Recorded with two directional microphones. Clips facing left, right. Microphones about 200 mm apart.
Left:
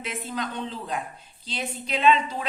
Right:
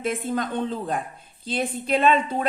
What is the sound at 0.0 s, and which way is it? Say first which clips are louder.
A woman's voice: right 6 dB; 50° right (ahead or behind).